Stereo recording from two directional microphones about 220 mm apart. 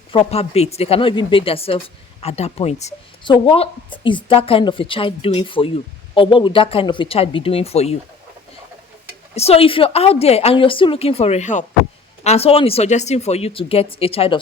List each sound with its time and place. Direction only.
0.1 s a woman's voice: 25° left (ahead or behind)
9.3 s a woman's voice: 25° left (ahead or behind)